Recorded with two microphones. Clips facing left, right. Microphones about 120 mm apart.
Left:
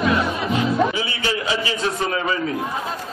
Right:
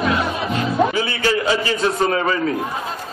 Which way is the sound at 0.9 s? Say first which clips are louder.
Right 5 dB; 45° right (ahead or behind).